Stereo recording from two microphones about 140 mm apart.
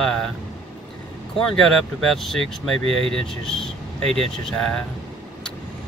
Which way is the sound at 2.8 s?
45° right (ahead or behind).